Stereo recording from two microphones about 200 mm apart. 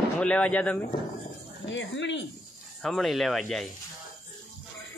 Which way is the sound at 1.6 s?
65° left (ahead or behind).